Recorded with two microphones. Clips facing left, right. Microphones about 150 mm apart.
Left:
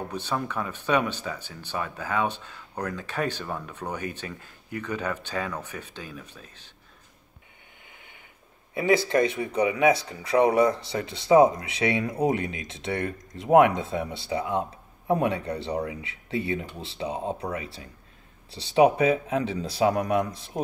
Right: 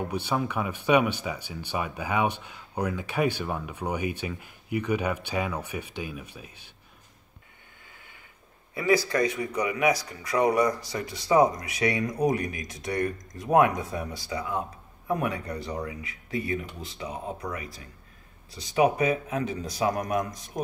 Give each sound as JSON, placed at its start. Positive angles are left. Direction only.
{"t": 0.1, "sound": "speech", "side_deg": -10}
{"t": 7.8, "sound": "mechanisms", "side_deg": 20}
{"t": 8.7, "sound": "speech", "side_deg": 25}